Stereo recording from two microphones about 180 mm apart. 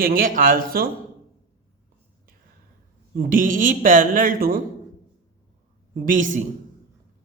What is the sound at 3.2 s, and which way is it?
Speech, 50° right (ahead or behind).